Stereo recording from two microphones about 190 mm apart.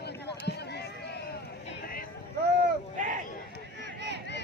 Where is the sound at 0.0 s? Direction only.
60° left (ahead or behind).